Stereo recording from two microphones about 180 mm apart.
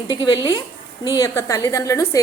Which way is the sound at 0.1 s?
25° left (ahead or behind).